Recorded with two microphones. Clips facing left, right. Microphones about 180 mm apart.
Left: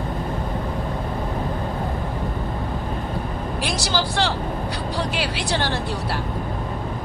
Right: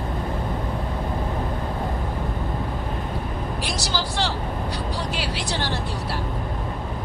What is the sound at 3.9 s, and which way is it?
Vehicle, 65° left (ahead or behind).